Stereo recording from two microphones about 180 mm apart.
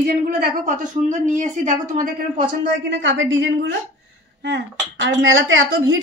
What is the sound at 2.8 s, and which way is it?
Speech, 80° right.